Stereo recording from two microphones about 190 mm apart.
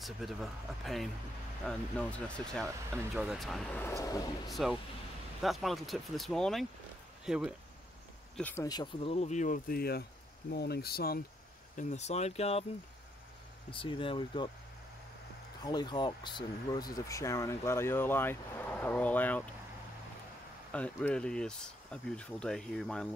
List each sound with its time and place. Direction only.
0.0 s speech: centre (ahead or behind); by 4.3 s 15° left (ahead or behind)
4.5 s speech: centre (ahead or behind)
8.4 s speech: 10° left (ahead or behind)
8.6 s speech: 25° left (ahead or behind); by 11.2 s 55° left (ahead or behind)
11.7 s speech: 35° left (ahead or behind)
13.7 s speech: 25° left (ahead or behind)
15.6 s speech: 20° left (ahead or behind)
20.7 s speech: 5° left (ahead or behind)